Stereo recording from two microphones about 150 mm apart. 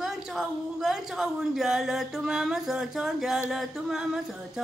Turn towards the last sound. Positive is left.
turn(degrees=0)  # may be behind; listen again after turning